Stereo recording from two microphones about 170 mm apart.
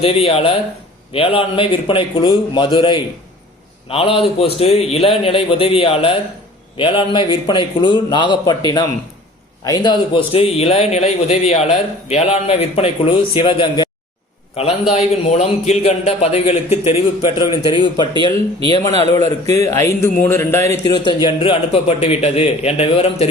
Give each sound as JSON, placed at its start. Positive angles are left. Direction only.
{"t": 0.0, "sound": "a man's voice", "side_deg": 35}